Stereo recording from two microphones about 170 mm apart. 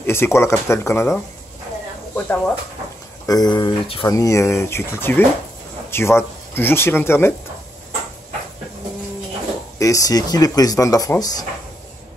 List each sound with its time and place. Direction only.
0.0 s speech: 15° left (ahead or behind)
3.3 s speech: 25° left (ahead or behind)
4.1 s speech: 20° left (ahead or behind)
9.8 s speech: 20° left (ahead or behind)